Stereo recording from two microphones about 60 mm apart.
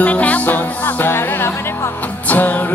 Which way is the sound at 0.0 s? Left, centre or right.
Left.